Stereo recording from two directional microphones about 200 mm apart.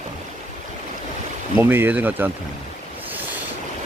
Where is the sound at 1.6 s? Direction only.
10° right (ahead or behind).